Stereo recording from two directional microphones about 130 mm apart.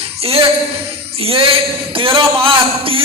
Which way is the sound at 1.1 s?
45° right (ahead or behind).